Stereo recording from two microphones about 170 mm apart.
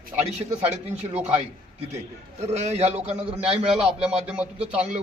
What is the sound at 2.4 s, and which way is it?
A man's voice, 40° right (ahead or behind).